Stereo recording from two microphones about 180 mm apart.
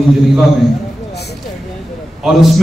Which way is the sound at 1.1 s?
65° left (ahead or behind).